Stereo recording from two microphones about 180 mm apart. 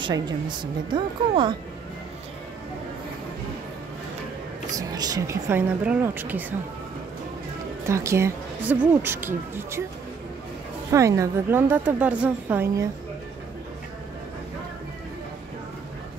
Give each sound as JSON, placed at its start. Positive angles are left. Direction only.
{"t": 0.0, "sound": "a woman's voice", "side_deg": -25}
{"t": 4.7, "sound": "speech", "side_deg": -20}
{"t": 7.9, "sound": "speech", "side_deg": -15}
{"t": 10.9, "sound": "speech", "side_deg": -15}